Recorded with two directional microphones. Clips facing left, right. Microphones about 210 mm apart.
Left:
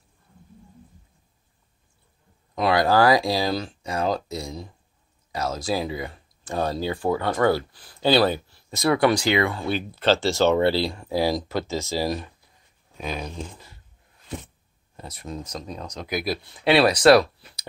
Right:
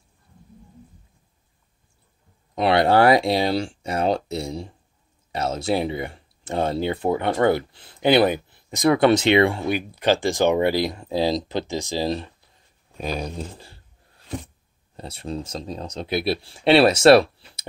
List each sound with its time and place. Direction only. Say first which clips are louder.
2.5 s speech: right 2 dB; 25° right (ahead or behind)
9.7 s speech: right 1 dB; 15° right (ahead or behind)
13.0 s speech: right 3 dB; 35° right (ahead or behind)